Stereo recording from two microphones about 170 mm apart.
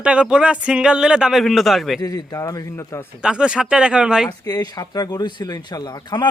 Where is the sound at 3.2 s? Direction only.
5° right (ahead or behind).